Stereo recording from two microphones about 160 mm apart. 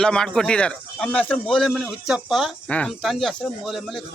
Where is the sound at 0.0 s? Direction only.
5° left (ahead or behind).